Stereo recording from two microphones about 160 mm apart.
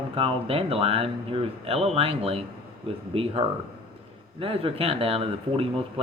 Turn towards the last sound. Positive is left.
turn(degrees=-35)  # may be behind; listen again after turning